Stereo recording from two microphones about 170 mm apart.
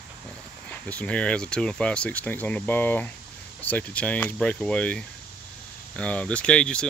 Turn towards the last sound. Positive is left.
turn(degrees=5)  # may be behind; listen again after turning